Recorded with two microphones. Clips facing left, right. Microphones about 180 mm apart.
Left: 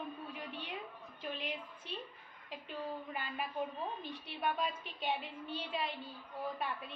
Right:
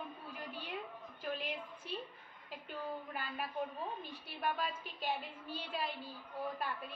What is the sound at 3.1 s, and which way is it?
A woman's voice, centre (ahead or behind).